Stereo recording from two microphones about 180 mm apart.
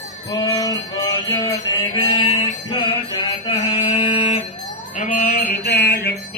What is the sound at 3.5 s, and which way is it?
Mantra, 25° left (ahead or behind).